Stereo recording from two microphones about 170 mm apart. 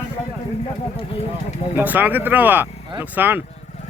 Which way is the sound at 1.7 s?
10° right (ahead or behind).